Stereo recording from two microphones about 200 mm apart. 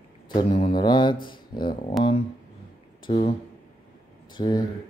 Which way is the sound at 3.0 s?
25° left (ahead or behind).